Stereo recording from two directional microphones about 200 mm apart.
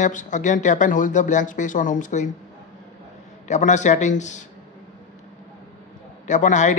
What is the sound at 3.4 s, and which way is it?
Speech, 35° left (ahead or behind).